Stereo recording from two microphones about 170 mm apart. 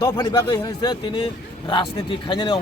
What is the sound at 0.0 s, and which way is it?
Speech, 25° left (ahead or behind).